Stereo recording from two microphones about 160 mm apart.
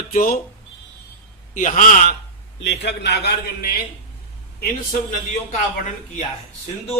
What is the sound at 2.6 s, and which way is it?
A man's voice, 90° left.